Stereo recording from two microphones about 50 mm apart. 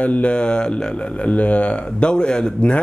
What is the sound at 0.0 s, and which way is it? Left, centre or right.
Speech, left.